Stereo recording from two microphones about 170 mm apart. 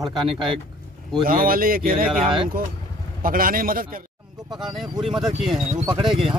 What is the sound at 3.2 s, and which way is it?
Speech, 55° right (ahead or behind).